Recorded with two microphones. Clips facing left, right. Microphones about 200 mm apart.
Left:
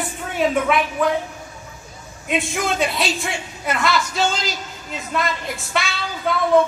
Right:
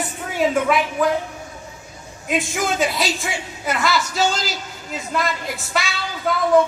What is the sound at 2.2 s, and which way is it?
A man's voice, centre (ahead or behind).